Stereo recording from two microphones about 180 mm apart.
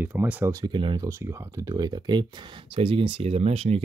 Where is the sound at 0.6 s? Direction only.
25° right (ahead or behind).